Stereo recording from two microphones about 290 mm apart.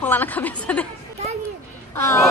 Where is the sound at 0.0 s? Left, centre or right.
Centre.